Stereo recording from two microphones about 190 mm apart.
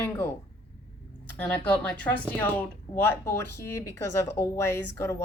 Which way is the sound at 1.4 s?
5° left (ahead or behind).